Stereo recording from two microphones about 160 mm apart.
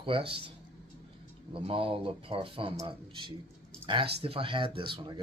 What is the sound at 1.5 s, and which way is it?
Speech, 35° right (ahead or behind).